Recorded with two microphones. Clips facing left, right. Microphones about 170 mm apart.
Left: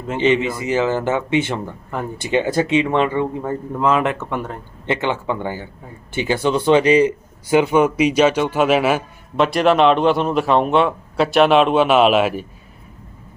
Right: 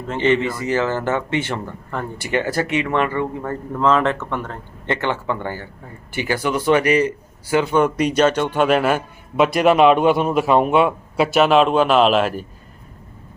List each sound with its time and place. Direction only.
0.1 s speech: 10° left (ahead or behind)
9.6 s a man's voice: 5° right (ahead or behind)